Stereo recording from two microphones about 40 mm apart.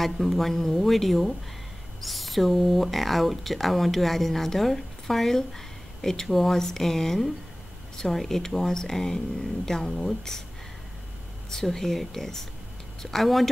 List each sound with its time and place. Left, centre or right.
0.0 s speech: centre
11.5 s speech: centre